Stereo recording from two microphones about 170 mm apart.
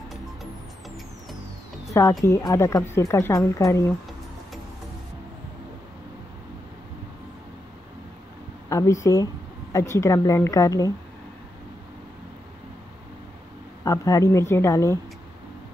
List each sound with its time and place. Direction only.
0.1 s music: centre (ahead or behind)
1.9 s speech: 20° left (ahead or behind)
8.6 s a woman's voice: 20° left (ahead or behind)
13.8 s speech: 20° left (ahead or behind)